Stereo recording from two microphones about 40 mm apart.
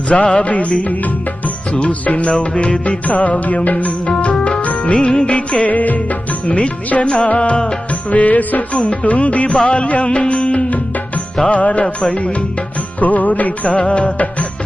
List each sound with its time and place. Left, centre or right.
0.1 s music: left
4.9 s music: left
5.7 s music: left
8.1 s music: left